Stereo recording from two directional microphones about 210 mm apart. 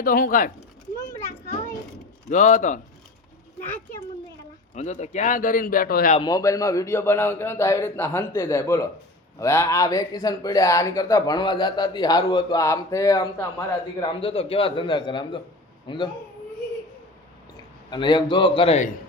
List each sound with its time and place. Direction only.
0.0 s speech: 40° left (ahead or behind)
2.3 s speech: 35° left (ahead or behind)
4.7 s speech: 35° left (ahead or behind)
6.1 s a man's voice: 20° left (ahead or behind)
17.9 s speech: 20° left (ahead or behind)